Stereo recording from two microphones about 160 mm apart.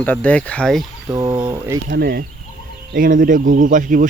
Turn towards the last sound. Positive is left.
turn(degrees=-55)  # may be behind; listen again after turning